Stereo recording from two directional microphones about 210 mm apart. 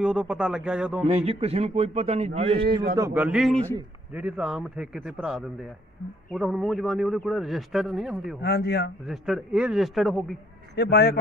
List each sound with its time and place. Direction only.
0.0 s a man's voice: 5° right (ahead or behind)
1.0 s a man's voice: 30° right (ahead or behind)
3.0 s a man's voice: 10° right (ahead or behind)
8.4 s speech: 50° left (ahead or behind)
9.0 s a man's voice: centre (ahead or behind)
10.8 s speech: 50° left (ahead or behind)